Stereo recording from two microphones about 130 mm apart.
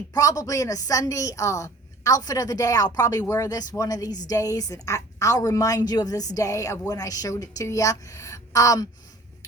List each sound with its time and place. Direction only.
0.1 s a woman's voice: 25° left (ahead or behind)